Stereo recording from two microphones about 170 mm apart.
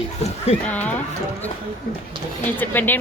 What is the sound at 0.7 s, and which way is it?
Speech, 10° left (ahead or behind).